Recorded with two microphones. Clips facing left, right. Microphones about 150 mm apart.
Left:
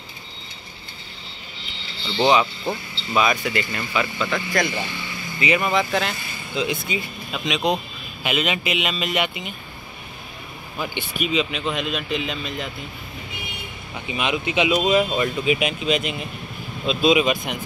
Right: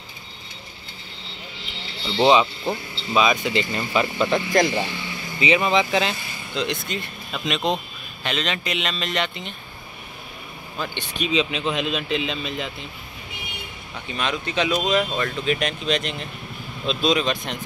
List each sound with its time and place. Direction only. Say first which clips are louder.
2.1 s speech: right 1 dB; 25° right (ahead or behind)
6.5 s speech: left 2 dB; 5° left (ahead or behind)
10.8 s speech: left 1 dB; 10° left (ahead or behind)
13.9 s speech: left 2 dB; 10° left (ahead or behind)